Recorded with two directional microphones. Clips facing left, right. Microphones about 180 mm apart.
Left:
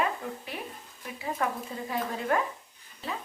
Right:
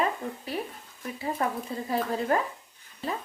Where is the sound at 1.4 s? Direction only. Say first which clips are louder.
Right 1 dB; 35° right (ahead or behind).